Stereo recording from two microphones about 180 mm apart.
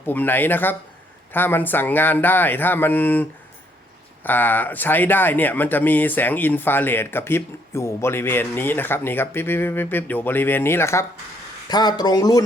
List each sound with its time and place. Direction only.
0.0 s speech: 10° left (ahead or behind)